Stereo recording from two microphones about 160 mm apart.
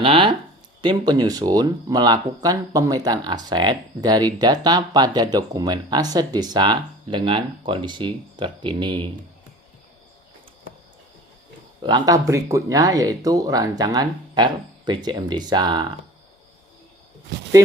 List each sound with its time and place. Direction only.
0.0 s speech: 35° right (ahead or behind)
11.8 s speech: 25° right (ahead or behind)